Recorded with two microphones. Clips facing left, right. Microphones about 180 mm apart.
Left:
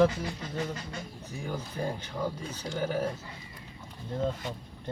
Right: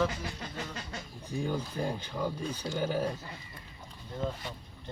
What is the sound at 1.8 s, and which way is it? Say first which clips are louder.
Speech: left 1 dB; 10° right (ahead or behind).